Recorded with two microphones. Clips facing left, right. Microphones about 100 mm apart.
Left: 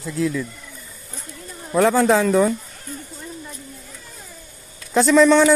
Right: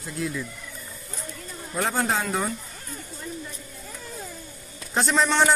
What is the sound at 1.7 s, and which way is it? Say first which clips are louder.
Speech: left 10 dB; 90° left.